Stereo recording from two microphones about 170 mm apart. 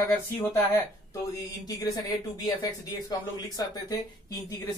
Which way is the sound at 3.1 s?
25° left (ahead or behind).